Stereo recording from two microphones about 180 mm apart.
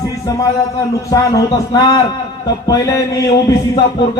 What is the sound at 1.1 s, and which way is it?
A man's voice, 20° left (ahead or behind).